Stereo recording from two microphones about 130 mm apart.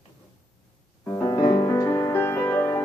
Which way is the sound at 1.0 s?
20° left (ahead or behind).